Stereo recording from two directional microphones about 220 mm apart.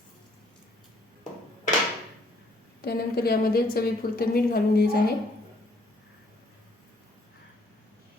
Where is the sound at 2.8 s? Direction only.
45° left (ahead or behind).